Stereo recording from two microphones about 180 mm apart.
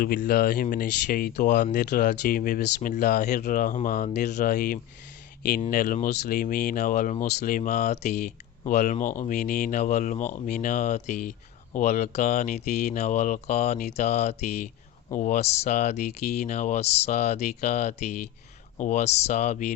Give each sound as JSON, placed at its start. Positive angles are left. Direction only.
{"t": 0.0, "sound": "speech", "side_deg": 55}
{"t": 1.8, "sound": "speech", "side_deg": 70}
{"t": 2.6, "sound": "speech", "side_deg": 65}
{"t": 3.3, "sound": "speech", "side_deg": 45}